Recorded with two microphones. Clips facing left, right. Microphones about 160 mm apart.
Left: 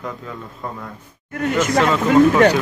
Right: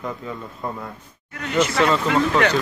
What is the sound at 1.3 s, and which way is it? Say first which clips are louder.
Speech: left 2 dB; 50° left (ahead or behind).